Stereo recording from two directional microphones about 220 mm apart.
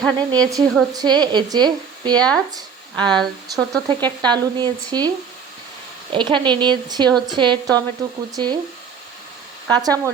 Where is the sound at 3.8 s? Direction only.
20° right (ahead or behind).